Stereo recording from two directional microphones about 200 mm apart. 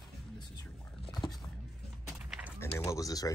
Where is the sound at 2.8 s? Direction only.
15° left (ahead or behind).